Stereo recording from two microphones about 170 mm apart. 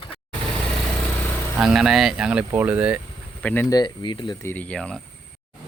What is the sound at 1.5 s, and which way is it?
Speech, 5° right (ahead or behind).